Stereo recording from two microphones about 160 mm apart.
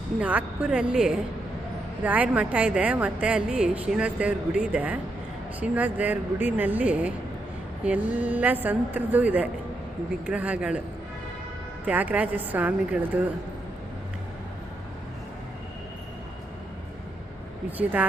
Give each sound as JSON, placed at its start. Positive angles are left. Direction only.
{"t": 0.2, "sound": "a woman's voice", "side_deg": -5}
{"t": 11.9, "sound": "a woman's voice", "side_deg": -10}
{"t": 17.7, "sound": "a woman's voice", "side_deg": -10}